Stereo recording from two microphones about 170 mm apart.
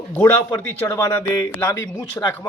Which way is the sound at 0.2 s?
10° left (ahead or behind).